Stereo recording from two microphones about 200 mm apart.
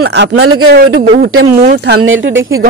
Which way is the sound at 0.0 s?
60° right (ahead or behind).